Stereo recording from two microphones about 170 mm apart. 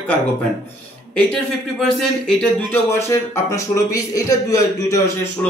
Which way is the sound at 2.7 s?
15° left (ahead or behind).